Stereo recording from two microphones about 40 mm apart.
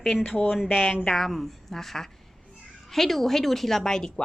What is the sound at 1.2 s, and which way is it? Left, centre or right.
A woman's voice, centre.